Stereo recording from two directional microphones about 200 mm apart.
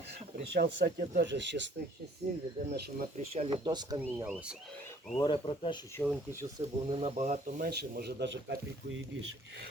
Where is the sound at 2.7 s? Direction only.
45° right (ahead or behind).